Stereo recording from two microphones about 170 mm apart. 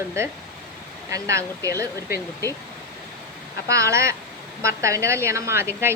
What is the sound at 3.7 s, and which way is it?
A woman's voice, 15° right (ahead or behind).